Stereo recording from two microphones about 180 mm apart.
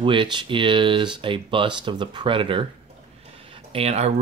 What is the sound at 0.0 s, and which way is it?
Speech, 25° right (ahead or behind).